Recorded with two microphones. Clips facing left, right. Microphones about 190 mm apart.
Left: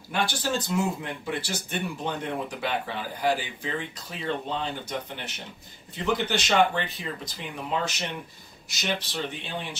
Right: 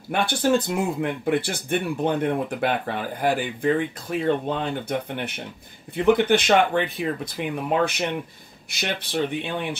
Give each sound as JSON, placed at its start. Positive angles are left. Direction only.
{"t": 0.1, "sound": "speech", "side_deg": -55}